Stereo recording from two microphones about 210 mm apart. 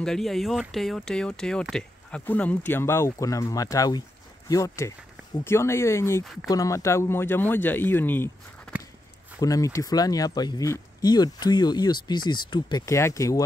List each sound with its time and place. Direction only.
0.0 s speech: centre (ahead or behind)